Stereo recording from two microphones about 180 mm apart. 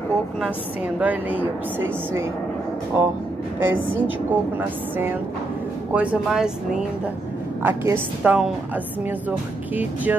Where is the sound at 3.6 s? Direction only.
10° right (ahead or behind).